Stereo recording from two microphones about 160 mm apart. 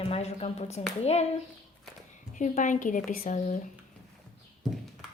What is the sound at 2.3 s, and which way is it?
Speech, 50° left (ahead or behind).